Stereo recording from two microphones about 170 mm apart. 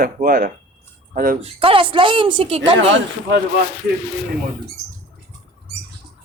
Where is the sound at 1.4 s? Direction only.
30° right (ahead or behind).